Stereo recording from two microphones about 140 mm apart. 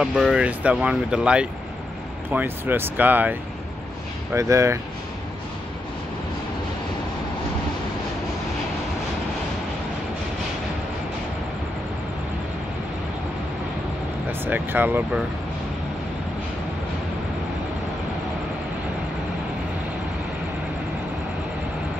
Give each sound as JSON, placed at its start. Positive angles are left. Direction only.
{"t": 0.0, "sound": "speech", "side_deg": -5}
{"t": 14.4, "sound": "speech", "side_deg": -15}